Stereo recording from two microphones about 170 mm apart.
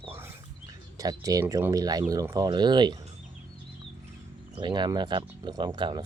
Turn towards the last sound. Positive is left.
turn(degrees=-25)  # may be behind; listen again after turning